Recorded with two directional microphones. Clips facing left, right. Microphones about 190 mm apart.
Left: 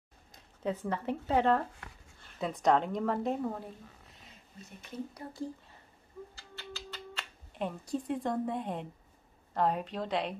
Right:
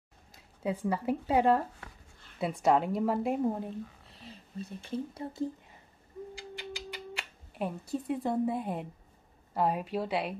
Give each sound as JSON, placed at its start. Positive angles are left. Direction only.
{"t": 0.6, "sound": "speech", "side_deg": -10}
{"t": 4.1, "sound": "speech", "side_deg": -30}
{"t": 6.3, "sound": "a sound", "side_deg": -15}
{"t": 9.5, "sound": "speech", "side_deg": -10}